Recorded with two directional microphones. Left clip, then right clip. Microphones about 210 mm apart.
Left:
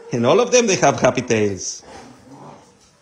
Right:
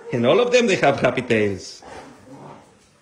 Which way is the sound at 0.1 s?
15° left (ahead or behind).